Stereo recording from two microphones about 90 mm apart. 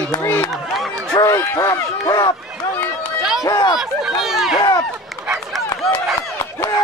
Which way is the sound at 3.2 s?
5° right (ahead or behind).